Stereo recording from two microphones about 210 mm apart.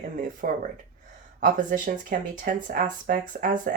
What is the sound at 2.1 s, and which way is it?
Speech, 40° right (ahead or behind).